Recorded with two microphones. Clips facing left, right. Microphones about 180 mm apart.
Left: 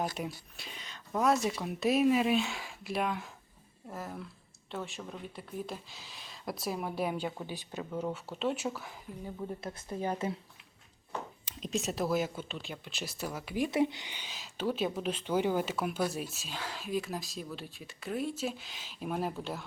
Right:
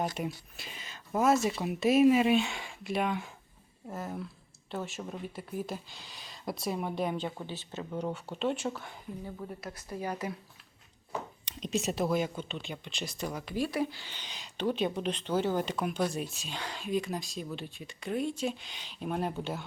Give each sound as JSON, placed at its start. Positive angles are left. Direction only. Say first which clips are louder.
{"t": 0.2, "sound": "speech", "louder": "right 2 dB", "side_deg": 0}
{"t": 8.0, "sound": "speech", "louder": "right 2 dB", "side_deg": 0}
{"t": 9.6, "sound": "a woman's voice", "louder": "left 1 dB", "side_deg": 25}
{"t": 11.4, "sound": "speech", "louder": "right 3 dB", "side_deg": 0}
{"t": 13.7, "sound": "speech", "louder": "left 3 dB", "side_deg": 20}